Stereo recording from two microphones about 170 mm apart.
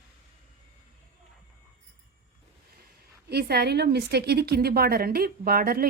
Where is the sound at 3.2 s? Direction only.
70° right (ahead or behind).